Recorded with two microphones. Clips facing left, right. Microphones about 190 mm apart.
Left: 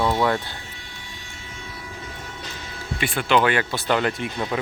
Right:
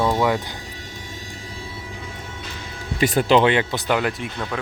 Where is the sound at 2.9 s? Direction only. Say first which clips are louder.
Right 5 dB; 40° right (ahead or behind).